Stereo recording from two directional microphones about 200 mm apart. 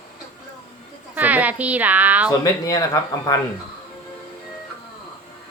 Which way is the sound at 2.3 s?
20° left (ahead or behind).